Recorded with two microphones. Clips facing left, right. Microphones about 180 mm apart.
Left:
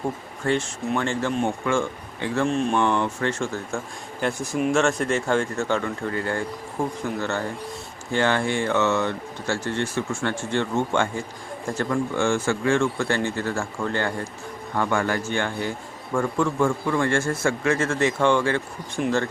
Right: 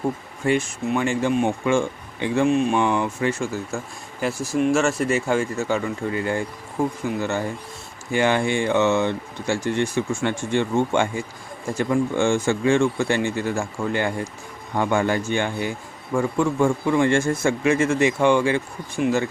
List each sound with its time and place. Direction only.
0.4 s speech: 10° right (ahead or behind)